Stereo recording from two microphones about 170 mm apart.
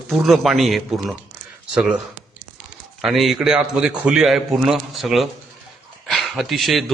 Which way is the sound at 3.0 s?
Centre (ahead or behind).